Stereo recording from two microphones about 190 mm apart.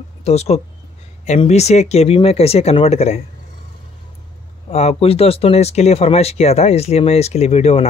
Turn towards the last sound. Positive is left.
turn(degrees=35)  # may be behind; listen again after turning